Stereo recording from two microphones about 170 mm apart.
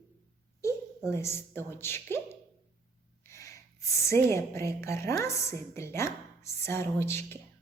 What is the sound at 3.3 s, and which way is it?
Snort, 15° left (ahead or behind).